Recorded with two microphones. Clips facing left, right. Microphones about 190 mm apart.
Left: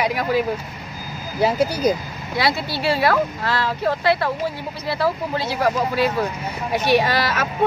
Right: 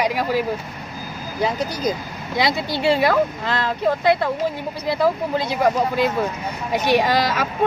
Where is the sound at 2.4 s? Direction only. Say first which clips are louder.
Right 1 dB; 20° right (ahead or behind).